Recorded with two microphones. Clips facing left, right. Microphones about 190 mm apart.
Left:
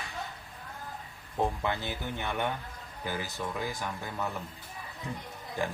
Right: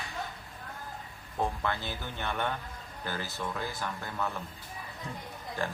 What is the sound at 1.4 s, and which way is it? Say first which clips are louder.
Speech: left 2 dB; 15° left (ahead or behind).